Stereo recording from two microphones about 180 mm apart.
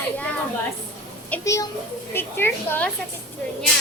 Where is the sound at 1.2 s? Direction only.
15° left (ahead or behind).